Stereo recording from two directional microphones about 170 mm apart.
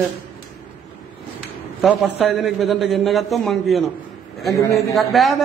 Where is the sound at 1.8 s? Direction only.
Centre (ahead or behind).